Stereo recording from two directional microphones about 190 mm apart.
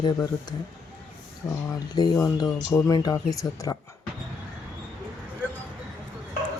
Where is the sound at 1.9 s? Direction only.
20° left (ahead or behind).